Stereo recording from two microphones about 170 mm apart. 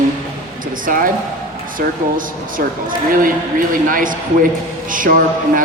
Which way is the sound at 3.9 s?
55° right (ahead or behind).